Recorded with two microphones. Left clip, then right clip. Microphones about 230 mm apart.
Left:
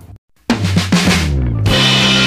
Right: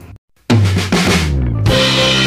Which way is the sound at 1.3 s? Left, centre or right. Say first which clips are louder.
Even; centre.